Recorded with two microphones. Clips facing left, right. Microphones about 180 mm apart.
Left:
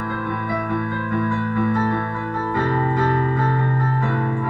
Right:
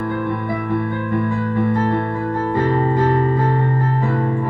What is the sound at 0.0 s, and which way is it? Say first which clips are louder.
Music: right 4 dB; 25° right (ahead or behind).